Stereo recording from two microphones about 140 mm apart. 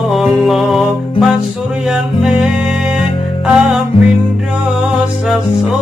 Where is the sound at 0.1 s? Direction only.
Centre (ahead or behind).